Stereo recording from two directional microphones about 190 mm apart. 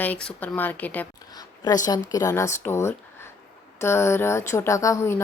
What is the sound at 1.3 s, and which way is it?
A woman's voice, 20° left (ahead or behind).